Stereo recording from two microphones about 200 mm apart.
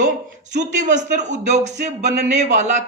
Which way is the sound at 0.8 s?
35° right (ahead or behind).